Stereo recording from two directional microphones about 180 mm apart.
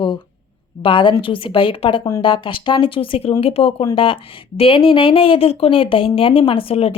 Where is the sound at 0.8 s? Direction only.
25° left (ahead or behind).